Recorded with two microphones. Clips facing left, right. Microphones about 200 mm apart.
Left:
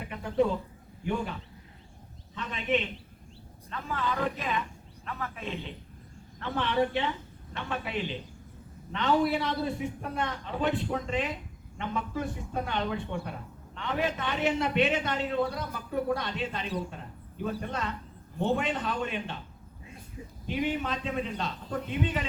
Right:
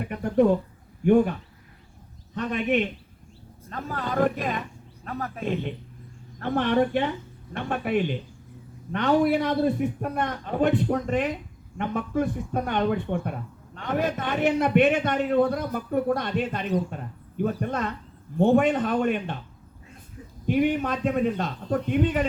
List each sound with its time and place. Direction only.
0.0 s bird: 50° right (ahead or behind)
1.0 s a man's voice: 55° right (ahead or behind)
3.7 s a man's voice: 40° right (ahead or behind)
20.5 s a man's voice: 50° right (ahead or behind)